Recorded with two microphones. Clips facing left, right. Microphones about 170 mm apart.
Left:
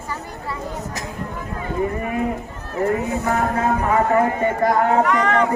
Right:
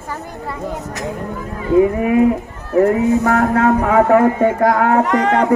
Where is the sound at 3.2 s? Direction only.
65° right (ahead or behind).